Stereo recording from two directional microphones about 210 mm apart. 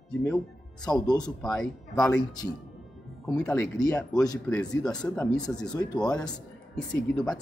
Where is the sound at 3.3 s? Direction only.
5° left (ahead or behind).